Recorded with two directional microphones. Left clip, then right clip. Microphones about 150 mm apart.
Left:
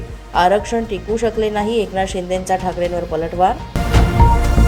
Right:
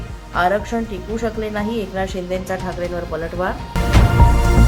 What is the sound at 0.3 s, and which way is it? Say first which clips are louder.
A woman's voice: left 4 dB; 15° left (ahead or behind).